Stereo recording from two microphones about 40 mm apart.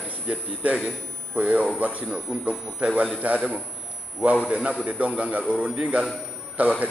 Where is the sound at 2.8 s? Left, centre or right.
Right.